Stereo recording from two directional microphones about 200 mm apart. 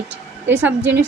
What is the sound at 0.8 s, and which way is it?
Speech, 60° right (ahead or behind).